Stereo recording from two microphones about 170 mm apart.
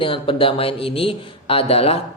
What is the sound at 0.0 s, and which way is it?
Speech, 30° left (ahead or behind).